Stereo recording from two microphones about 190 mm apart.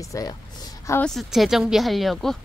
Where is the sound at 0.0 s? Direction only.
20° left (ahead or behind).